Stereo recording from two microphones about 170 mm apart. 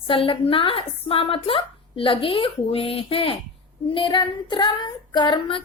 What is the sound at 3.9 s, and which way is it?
Child singing, 30° left (ahead or behind).